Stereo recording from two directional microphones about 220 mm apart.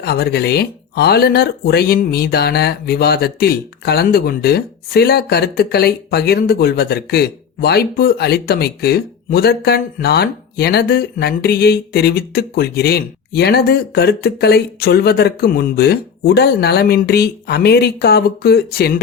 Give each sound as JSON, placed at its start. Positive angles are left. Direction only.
{"t": 0.0, "sound": "speech", "side_deg": 45}